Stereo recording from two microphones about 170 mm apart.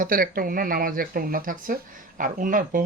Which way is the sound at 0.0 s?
55° right (ahead or behind).